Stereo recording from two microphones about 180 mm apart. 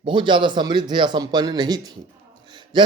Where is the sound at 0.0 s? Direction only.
25° right (ahead or behind).